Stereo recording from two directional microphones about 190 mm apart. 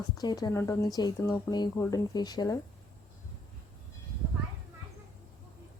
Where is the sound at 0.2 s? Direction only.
20° left (ahead or behind).